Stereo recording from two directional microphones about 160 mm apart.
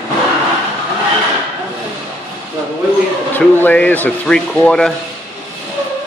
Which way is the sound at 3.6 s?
10° left (ahead or behind).